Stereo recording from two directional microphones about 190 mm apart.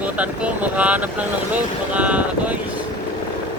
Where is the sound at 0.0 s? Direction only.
5° right (ahead or behind).